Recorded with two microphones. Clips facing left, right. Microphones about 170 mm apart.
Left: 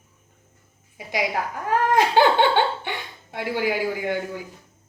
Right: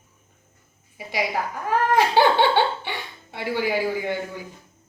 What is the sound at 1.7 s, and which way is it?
Giggle, 15° left (ahead or behind).